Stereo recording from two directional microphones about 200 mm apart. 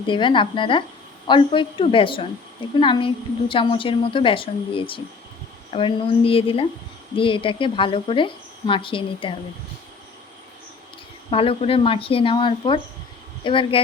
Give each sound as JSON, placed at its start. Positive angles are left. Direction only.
{"t": 0.0, "sound": "a woman's voice", "side_deg": 25}
{"t": 11.3, "sound": "a woman's voice", "side_deg": 30}